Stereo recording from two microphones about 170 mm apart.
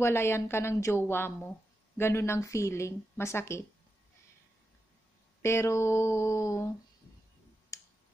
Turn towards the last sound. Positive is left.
turn(degrees=20)  # may be behind; listen again after turning